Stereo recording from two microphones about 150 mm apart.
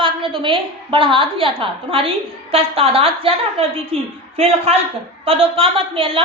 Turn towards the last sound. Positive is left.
turn(degrees=-40)  # may be behind; listen again after turning